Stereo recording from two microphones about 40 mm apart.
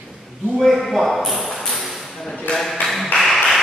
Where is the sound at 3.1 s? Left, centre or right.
Left.